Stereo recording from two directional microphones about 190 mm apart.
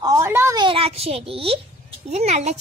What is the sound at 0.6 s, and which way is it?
A child's voice, 30° right (ahead or behind).